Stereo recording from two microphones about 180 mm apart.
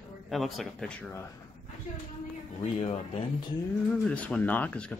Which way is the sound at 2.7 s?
30° left (ahead or behind).